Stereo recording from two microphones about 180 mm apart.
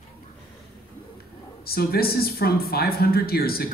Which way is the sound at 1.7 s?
60° left (ahead or behind).